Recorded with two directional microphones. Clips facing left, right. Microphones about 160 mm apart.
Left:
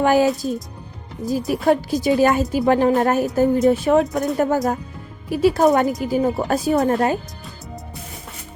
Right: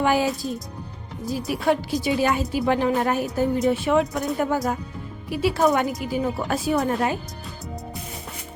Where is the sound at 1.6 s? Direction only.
40° left (ahead or behind).